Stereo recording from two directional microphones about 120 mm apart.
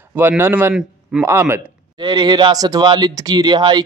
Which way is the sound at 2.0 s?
40° right (ahead or behind).